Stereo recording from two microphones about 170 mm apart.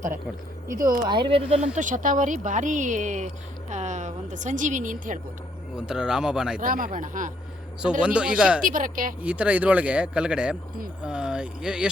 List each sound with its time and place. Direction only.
0.7 s speech: 55° right (ahead or behind)
1.1 s speech: 30° right (ahead or behind)
1.7 s speech: 50° right (ahead or behind)
5.7 s speech: 5° right (ahead or behind)
6.6 s speech: 55° right (ahead or behind)
8.0 s speech: 5° right (ahead or behind)
8.6 s speech: 50° right (ahead or behind)
9.2 s speech: 5° right (ahead or behind)